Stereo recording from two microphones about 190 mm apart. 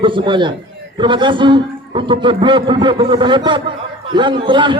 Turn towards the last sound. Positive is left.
turn(degrees=-25)  # may be behind; listen again after turning